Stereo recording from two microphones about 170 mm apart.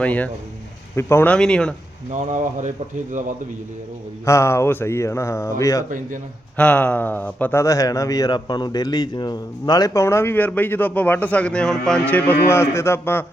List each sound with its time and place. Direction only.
0.0 s speech: 10° left (ahead or behind)
2.3 s speech: 45° right (ahead or behind)
4.3 s speech: 15° left (ahead or behind)
6.6 s speech: 5° left (ahead or behind)